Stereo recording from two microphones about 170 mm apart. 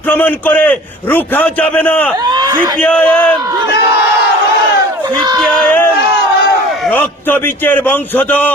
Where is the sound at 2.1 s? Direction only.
25° right (ahead or behind).